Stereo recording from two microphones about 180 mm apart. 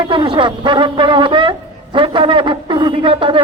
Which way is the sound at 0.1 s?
25° right (ahead or behind).